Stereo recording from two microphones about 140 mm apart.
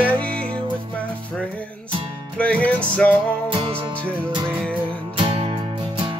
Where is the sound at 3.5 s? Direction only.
40° right (ahead or behind).